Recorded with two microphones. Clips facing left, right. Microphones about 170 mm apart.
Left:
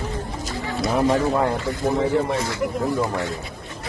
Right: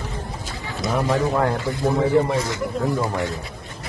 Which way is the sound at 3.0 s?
20° right (ahead or behind).